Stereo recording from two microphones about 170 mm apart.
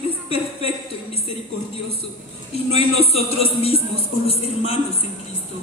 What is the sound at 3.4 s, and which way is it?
Speech, 35° left (ahead or behind).